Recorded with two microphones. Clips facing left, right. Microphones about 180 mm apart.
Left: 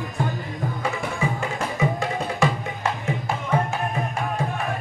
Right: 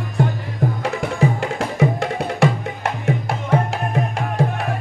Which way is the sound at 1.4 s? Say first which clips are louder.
Right 5 dB; 75° right (ahead or behind).